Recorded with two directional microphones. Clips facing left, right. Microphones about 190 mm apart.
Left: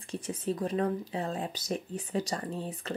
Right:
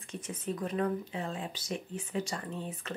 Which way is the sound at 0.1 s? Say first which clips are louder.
Left 4 dB; 35° left (ahead or behind).